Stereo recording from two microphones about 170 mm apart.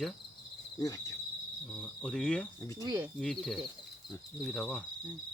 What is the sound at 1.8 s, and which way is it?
Cricket, 5° left (ahead or behind).